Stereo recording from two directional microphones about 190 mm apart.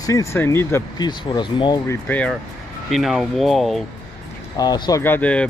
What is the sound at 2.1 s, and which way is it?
Speech, 5° left (ahead or behind).